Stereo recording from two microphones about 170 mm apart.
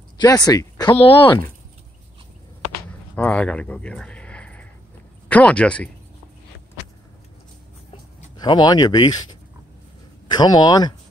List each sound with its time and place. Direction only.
0.2 s speech: 20° left (ahead or behind)
2.9 s a sound: 5° left (ahead or behind)
5.3 s speech: 5° left (ahead or behind)
8.4 s speech: 25° left (ahead or behind)
10.2 s speech: 25° left (ahead or behind)